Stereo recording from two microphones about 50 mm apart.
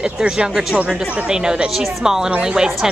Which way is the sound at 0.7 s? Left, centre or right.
Right.